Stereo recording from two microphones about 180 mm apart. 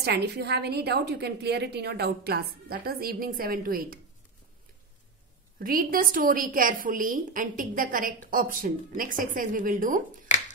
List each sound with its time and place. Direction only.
0.0 s a woman's voice: 65° right (ahead or behind)
5.6 s a woman's voice: 50° right (ahead or behind)